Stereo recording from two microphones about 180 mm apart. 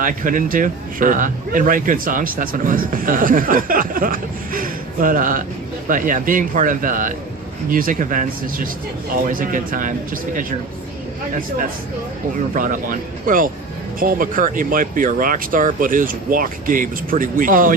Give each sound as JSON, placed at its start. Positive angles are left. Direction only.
{"t": 0.0, "sound": "speech", "side_deg": -50}
{"t": 12.5, "sound": "speech", "side_deg": -45}